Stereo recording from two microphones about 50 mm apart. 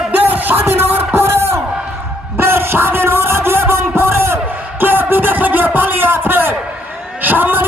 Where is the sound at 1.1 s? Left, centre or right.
Right.